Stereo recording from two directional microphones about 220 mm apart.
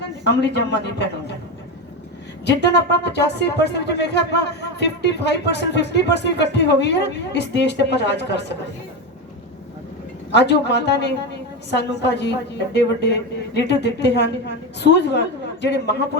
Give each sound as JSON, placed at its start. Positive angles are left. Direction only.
{"t": 0.3, "sound": "speech", "side_deg": 50}
{"t": 2.5, "sound": "speech", "side_deg": 50}
{"t": 10.3, "sound": "speech", "side_deg": 50}